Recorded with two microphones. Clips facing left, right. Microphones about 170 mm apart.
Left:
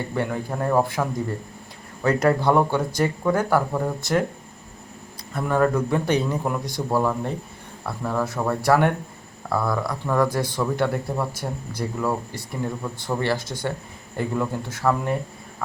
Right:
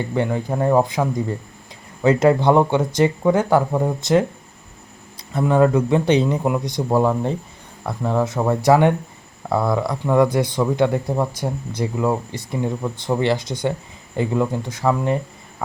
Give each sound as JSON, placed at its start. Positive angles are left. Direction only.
{"t": 0.3, "sound": "speech", "side_deg": -15}
{"t": 2.0, "sound": "speech", "side_deg": -20}
{"t": 5.3, "sound": "speech", "side_deg": -20}